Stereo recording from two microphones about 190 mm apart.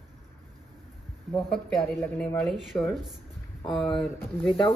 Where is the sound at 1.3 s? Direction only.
Centre (ahead or behind).